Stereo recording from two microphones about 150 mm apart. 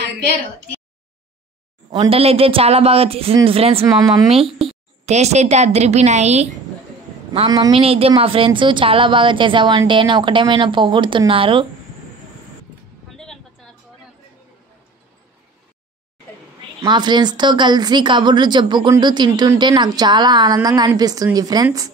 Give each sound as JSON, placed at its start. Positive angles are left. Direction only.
{"t": 1.9, "sound": "a woman's voice", "side_deg": -35}
{"t": 3.8, "sound": "a woman's voice", "side_deg": -20}
{"t": 4.5, "sound": "a sound", "side_deg": 0}
{"t": 5.0, "sound": "a woman's voice", "side_deg": -45}
{"t": 7.7, "sound": "a woman's voice", "side_deg": -40}
{"t": 13.1, "sound": "a sound", "side_deg": 0}
{"t": 16.8, "sound": "a woman's voice", "side_deg": -30}